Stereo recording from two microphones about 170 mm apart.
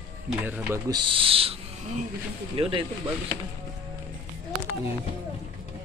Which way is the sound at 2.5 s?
30° right (ahead or behind).